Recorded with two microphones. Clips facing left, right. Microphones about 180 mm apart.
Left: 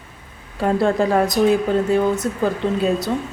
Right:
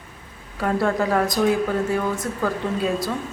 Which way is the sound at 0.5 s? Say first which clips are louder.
Left 4 dB; 25° left (ahead or behind).